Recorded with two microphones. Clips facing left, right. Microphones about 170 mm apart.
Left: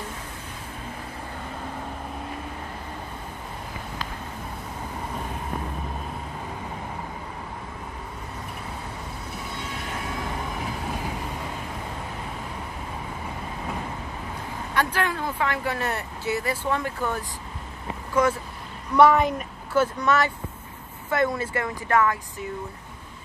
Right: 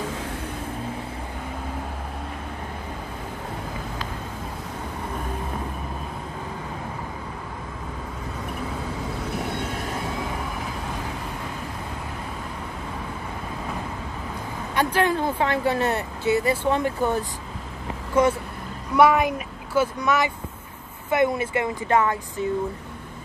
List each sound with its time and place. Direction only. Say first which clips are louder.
14.8 s speech: right 4 dB; 20° right (ahead or behind)
18.2 s speech: right 2 dB; 25° right (ahead or behind)
18.9 s speech: even; 10° right (ahead or behind)